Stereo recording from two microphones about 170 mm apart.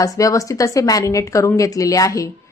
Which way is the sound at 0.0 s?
20° left (ahead or behind).